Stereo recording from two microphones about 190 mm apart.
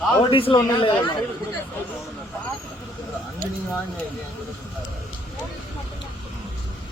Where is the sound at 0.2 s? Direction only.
25° left (ahead or behind).